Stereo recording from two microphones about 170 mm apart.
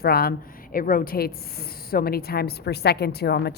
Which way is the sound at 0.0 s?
65° left (ahead or behind).